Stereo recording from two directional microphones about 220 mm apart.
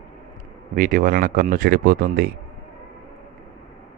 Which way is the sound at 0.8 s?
40° right (ahead or behind).